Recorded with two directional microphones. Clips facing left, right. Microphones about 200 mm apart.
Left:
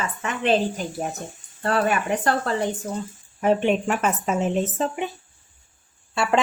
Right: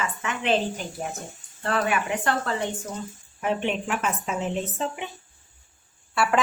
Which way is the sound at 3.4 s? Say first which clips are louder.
Left 6 dB; 40° left (ahead or behind).